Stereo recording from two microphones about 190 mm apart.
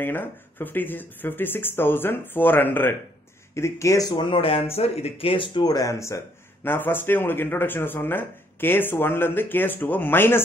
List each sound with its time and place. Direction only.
0.0 s speech: 10° left (ahead or behind)